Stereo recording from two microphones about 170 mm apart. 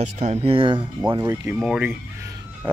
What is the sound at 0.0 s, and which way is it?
Speech, 40° right (ahead or behind).